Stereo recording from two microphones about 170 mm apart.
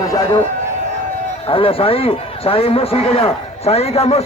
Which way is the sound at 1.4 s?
30° left (ahead or behind).